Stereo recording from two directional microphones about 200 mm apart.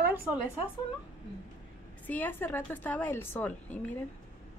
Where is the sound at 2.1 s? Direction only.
10° left (ahead or behind).